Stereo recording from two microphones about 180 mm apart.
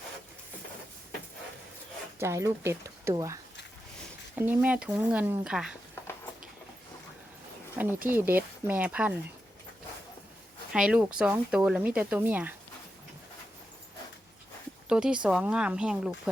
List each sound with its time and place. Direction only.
2.1 s speech: 15° right (ahead or behind)
4.4 s speech: 10° right (ahead or behind)
8.0 s speech: 10° right (ahead or behind)
10.7 s speech: 5° right (ahead or behind)
14.8 s speech: 5° right (ahead or behind)